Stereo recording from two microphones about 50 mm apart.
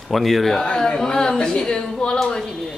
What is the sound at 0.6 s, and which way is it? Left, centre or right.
Speech, centre.